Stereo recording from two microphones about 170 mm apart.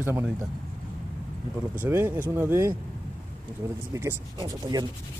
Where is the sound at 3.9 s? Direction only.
20° right (ahead or behind).